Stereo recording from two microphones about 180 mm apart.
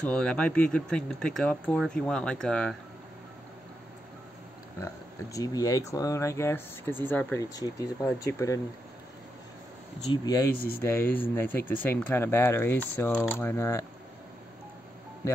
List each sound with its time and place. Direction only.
0.0 s speech: 5° left (ahead or behind)
4.7 s speech: 15° left (ahead or behind)
7.5 s speech: 20° left (ahead or behind)
10.1 s speech: 20° left (ahead or behind)
10.5 s speech: 55° left (ahead or behind)
10.8 s speech: 10° left (ahead or behind)